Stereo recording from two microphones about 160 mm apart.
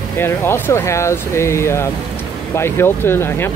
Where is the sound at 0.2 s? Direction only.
15° left (ahead or behind).